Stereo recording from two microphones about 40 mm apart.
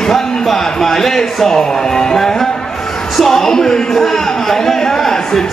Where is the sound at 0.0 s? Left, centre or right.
Centre.